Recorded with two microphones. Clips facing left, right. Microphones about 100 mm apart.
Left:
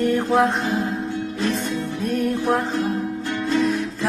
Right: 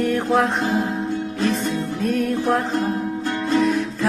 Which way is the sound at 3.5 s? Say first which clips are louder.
Right 2 dB; 50° right (ahead or behind).